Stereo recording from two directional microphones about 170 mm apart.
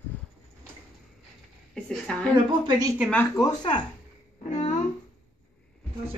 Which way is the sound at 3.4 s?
25° left (ahead or behind).